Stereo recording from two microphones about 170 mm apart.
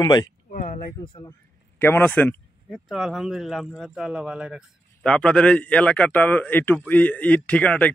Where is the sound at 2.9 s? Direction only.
Centre (ahead or behind).